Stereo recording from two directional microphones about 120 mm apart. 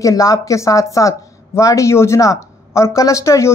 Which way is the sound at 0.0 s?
30° left (ahead or behind).